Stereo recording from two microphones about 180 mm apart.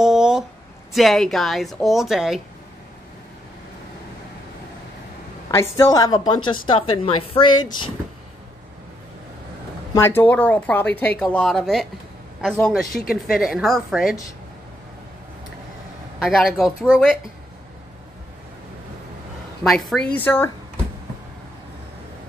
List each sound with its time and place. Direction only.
0.0 s a sound: 5° right (ahead or behind)
0.9 s a woman's voice: centre (ahead or behind)
5.5 s a woman's voice: 15° left (ahead or behind)
9.9 s a woman's voice: 10° left (ahead or behind)
16.2 s a woman's voice: centre (ahead or behind)
19.6 s a woman's voice: centre (ahead or behind)